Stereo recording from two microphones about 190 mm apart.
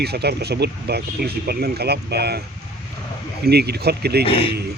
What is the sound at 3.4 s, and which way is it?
Speech, 60° right (ahead or behind).